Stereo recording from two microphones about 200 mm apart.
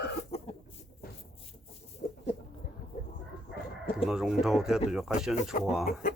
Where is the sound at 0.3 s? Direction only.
30° left (ahead or behind).